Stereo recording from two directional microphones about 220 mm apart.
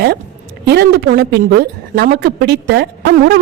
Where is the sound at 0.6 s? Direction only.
45° right (ahead or behind).